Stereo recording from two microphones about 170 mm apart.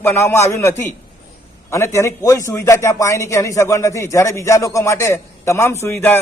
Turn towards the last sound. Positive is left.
turn(degrees=10)  # may be behind; listen again after turning